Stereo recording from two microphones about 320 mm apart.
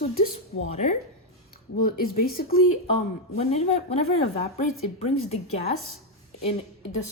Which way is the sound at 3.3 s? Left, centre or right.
Centre.